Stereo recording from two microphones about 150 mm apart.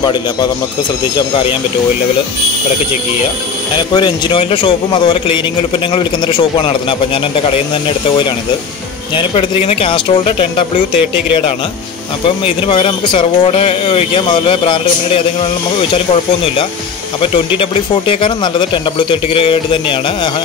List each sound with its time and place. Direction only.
0.0 s a man's voice: 30° left (ahead or behind)
3.9 s speech: 30° left (ahead or behind)
9.1 s speech: 35° left (ahead or behind)
12.4 s speech: 35° left (ahead or behind)
17.6 s speech: 35° left (ahead or behind)